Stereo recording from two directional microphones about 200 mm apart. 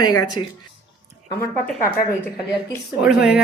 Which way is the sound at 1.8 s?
45° left (ahead or behind).